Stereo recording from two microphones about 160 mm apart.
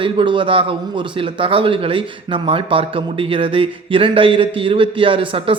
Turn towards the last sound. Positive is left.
turn(degrees=-35)  # may be behind; listen again after turning